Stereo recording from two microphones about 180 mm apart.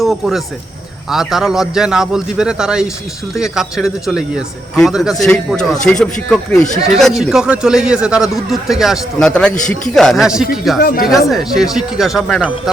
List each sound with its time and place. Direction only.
0.0 s a man's voice: centre (ahead or behind)
10.8 s speech: 55° left (ahead or behind)
11.1 s a man's voice: centre (ahead or behind)